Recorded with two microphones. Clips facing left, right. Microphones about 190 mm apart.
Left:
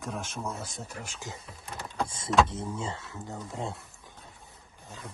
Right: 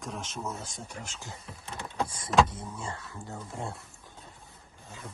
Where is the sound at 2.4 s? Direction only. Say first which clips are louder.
Left 4 dB; 25° left (ahead or behind).